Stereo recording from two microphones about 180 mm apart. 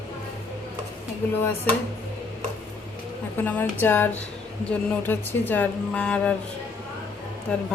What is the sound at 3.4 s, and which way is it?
Speech, 10° left (ahead or behind).